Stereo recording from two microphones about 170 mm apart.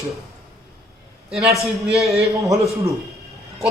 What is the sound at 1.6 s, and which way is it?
Speech, centre (ahead or behind).